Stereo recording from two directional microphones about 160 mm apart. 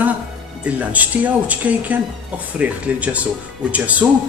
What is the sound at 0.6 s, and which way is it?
Speech, 10° right (ahead or behind).